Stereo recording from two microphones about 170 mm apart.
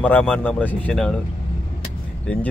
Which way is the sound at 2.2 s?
5° left (ahead or behind).